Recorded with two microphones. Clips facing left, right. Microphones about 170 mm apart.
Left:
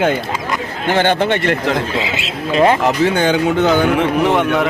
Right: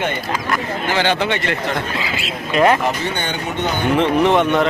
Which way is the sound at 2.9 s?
90° left.